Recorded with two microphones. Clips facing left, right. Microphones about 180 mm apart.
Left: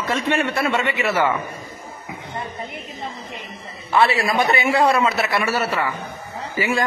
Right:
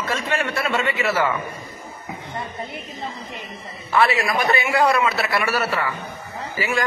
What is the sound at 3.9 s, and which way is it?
A man's voice, 30° left (ahead or behind).